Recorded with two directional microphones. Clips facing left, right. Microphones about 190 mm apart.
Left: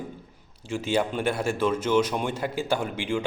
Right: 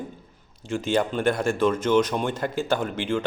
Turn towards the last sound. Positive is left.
turn(degrees=10)  # may be behind; listen again after turning